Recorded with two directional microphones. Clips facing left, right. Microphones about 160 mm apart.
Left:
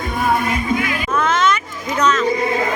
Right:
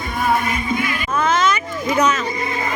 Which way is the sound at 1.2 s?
Centre (ahead or behind).